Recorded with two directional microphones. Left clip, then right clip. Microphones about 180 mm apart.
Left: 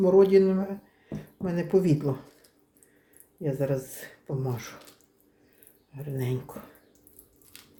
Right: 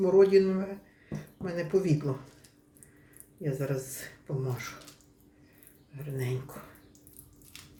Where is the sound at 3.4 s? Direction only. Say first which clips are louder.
Left 5 dB; 30° left (ahead or behind).